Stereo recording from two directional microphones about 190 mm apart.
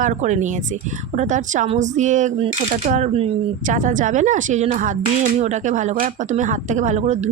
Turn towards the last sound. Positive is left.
turn(degrees=-35)  # may be behind; listen again after turning